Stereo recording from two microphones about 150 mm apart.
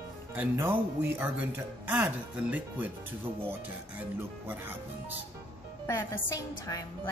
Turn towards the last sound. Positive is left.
turn(degrees=25)  # may be behind; listen again after turning